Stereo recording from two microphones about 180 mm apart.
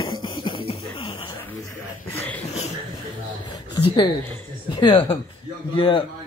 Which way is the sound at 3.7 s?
25° left (ahead or behind).